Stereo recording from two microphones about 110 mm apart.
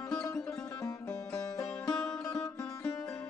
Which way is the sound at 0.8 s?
30° left (ahead or behind).